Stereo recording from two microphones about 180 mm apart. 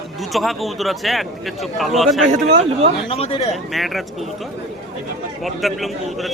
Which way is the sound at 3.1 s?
30° left (ahead or behind).